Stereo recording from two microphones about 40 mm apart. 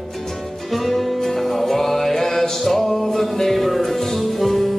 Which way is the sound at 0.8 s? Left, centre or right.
Centre.